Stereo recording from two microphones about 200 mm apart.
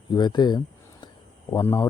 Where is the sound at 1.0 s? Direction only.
20° left (ahead or behind).